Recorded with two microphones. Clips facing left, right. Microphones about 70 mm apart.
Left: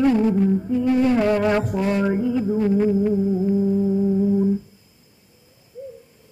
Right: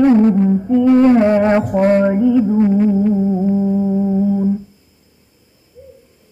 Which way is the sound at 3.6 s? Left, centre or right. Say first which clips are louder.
Right 3 dB; centre.